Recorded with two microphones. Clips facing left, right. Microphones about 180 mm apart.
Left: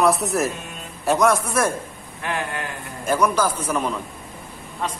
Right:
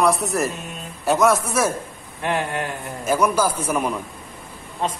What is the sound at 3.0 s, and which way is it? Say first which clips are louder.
A man's voice: right 1 dB; 5° right (ahead or behind).